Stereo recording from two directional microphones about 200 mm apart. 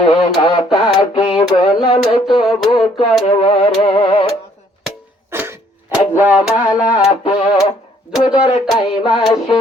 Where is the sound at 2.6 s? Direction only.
30° left (ahead or behind).